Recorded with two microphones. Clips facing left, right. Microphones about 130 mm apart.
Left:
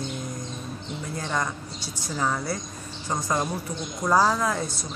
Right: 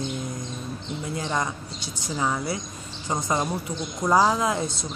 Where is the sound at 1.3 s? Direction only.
15° right (ahead or behind).